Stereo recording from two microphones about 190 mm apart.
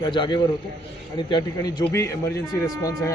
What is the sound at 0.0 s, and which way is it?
A man's voice, 25° left (ahead or behind).